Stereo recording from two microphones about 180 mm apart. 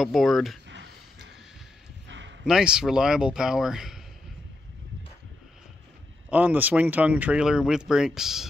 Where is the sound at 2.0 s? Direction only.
90° right.